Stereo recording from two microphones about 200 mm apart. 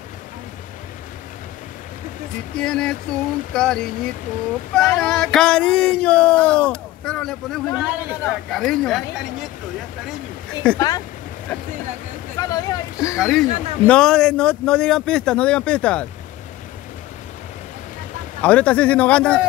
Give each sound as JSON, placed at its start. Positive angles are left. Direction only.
{"t": 2.5, "sound": "speech", "side_deg": 5}
{"t": 10.6, "sound": "speech", "side_deg": 5}
{"t": 12.4, "sound": "a man's voice", "side_deg": 15}
{"t": 13.2, "sound": "speech", "side_deg": 0}
{"t": 18.4, "sound": "a man's voice", "side_deg": 5}